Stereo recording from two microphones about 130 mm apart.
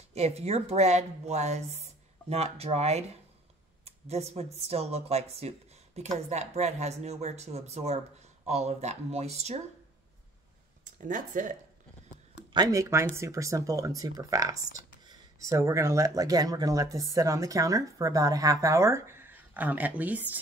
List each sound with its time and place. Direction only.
0.1 s speech: 55° right (ahead or behind)
10.8 s speech: 80° right
12.5 s speech: 25° right (ahead or behind)